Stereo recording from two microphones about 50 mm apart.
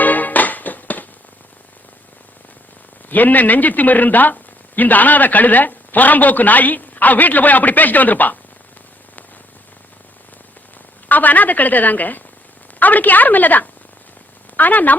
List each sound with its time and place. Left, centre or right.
0.0 s music: left
3.1 s speech: left
11.1 s speech: left